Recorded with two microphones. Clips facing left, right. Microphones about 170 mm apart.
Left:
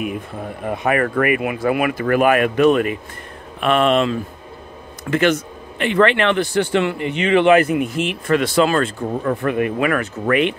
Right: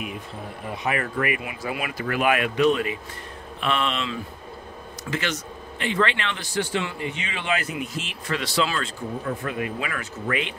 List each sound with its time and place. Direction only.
0.7 s speech: 55° left (ahead or behind)